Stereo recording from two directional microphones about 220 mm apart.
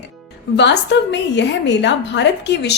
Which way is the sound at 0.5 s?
50° left (ahead or behind).